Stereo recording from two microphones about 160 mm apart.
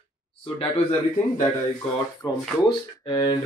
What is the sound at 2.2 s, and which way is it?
Speech, 25° left (ahead or behind).